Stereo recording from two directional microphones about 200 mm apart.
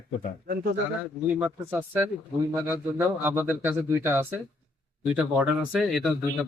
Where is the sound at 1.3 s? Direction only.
10° right (ahead or behind).